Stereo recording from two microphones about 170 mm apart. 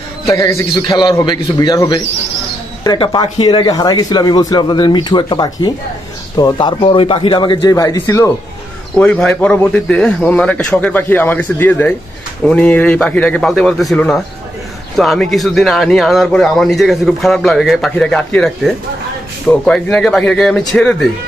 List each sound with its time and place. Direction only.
0.3 s a man's voice: 15° left (ahead or behind)
8.9 s a man's voice: 5° left (ahead or behind)